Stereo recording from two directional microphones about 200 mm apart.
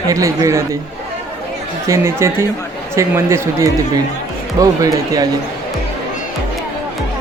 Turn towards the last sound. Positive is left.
turn(degrees=-15)  # may be behind; listen again after turning